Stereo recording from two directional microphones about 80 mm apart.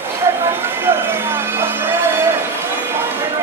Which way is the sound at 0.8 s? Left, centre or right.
Right.